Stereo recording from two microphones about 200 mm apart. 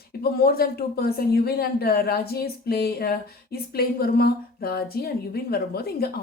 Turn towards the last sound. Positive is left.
turn(degrees=50)  # may be behind; listen again after turning